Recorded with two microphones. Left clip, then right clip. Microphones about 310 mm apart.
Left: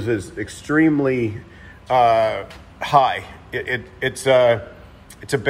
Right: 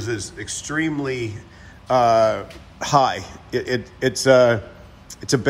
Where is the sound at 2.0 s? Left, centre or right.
Right.